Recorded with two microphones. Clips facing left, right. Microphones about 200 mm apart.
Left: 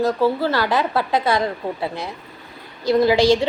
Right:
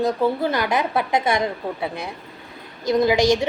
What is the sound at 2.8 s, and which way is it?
Speech, 20° right (ahead or behind).